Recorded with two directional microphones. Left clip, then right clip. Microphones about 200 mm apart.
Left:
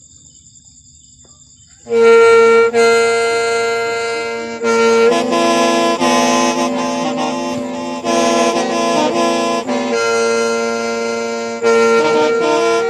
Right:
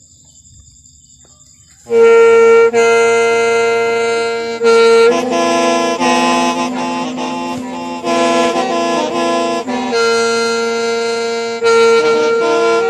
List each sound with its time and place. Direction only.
1.9 s music: 25° right (ahead or behind); by 5.1 s 45° right (ahead or behind)
5.1 s saxophone: 5° right (ahead or behind)
7.3 s music: 15° right (ahead or behind)
9.1 s saxophone: 15° right (ahead or behind)
9.7 s music: 45° right (ahead or behind)
12.4 s music: 10° right (ahead or behind)